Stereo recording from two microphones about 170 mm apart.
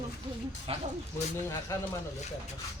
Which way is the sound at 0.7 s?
35° right (ahead or behind).